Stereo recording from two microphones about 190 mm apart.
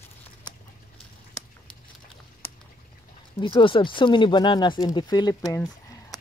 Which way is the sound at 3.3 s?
25° left (ahead or behind).